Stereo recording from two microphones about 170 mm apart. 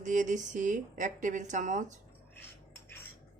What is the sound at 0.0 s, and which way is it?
Speech, 50° right (ahead or behind).